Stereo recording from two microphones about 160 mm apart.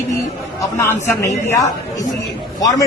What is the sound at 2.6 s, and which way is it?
Speech, 20° left (ahead or behind).